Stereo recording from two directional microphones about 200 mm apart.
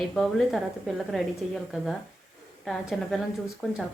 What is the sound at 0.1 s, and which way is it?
A woman's voice, centre (ahead or behind).